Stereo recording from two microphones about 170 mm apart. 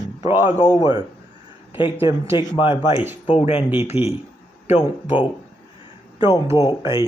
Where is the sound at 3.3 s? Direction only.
35° left (ahead or behind).